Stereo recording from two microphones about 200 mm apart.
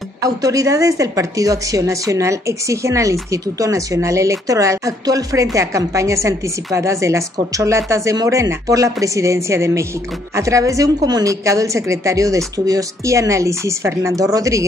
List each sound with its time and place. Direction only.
0.2 s a woman's voice: 15° right (ahead or behind)